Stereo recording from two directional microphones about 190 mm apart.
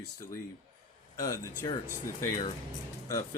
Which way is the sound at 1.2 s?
20° left (ahead or behind).